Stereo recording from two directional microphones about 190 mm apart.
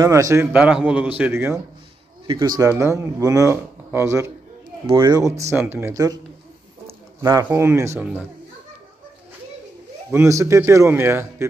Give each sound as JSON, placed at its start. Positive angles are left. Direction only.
{"t": 0.0, "sound": "speech", "side_deg": -15}
{"t": 10.1, "sound": "speech", "side_deg": -15}